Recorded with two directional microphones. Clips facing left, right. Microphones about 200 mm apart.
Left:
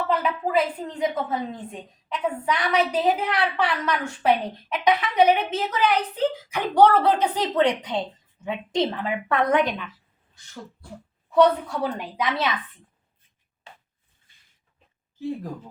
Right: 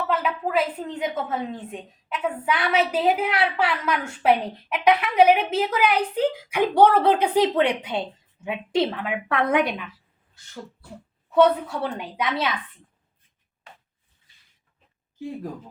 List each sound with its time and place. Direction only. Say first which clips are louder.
0.1 s a woman's voice: left 1 dB; 5° right (ahead or behind)
11.3 s a woman's voice: even; 5° right (ahead or behind)
14.3 s dog: right 1 dB; 55° left (ahead or behind)